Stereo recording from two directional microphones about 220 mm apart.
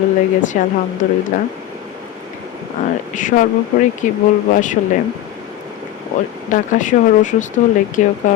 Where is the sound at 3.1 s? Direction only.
35° left (ahead or behind).